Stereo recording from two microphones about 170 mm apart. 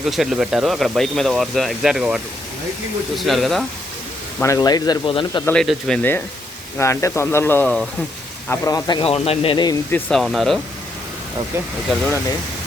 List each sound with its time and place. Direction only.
0.0 s speech: centre (ahead or behind)
4.4 s speech: 20° left (ahead or behind)
5.5 s speech: 5° left (ahead or behind)
8.4 s speech: 20° left (ahead or behind)
9.9 s speech: centre (ahead or behind)